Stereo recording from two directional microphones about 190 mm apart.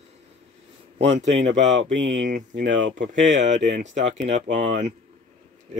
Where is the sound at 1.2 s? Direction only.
75° right (ahead or behind).